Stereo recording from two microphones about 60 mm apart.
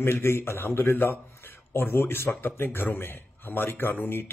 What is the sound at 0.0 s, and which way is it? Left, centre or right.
A man's voice, left.